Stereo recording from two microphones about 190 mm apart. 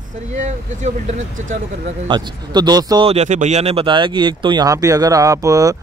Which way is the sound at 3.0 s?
35° right (ahead or behind).